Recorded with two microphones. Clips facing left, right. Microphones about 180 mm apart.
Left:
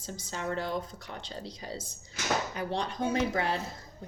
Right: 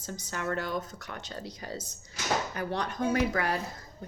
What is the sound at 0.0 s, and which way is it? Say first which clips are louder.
Speech: right 1 dB; 25° left (ahead or behind).